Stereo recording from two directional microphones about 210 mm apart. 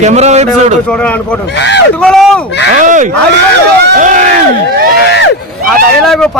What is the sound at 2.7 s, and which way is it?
A man's voice, 35° right (ahead or behind).